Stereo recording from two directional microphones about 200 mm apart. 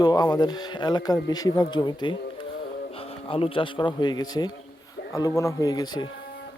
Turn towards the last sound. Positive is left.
turn(degrees=20)  # may be behind; listen again after turning